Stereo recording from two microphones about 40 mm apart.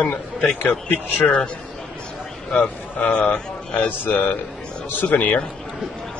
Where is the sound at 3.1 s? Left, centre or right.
Left.